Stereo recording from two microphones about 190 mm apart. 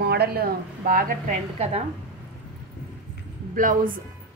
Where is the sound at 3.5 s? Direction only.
45° right (ahead or behind).